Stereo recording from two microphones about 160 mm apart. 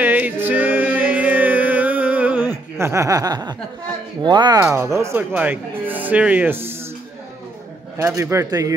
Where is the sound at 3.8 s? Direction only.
30° right (ahead or behind).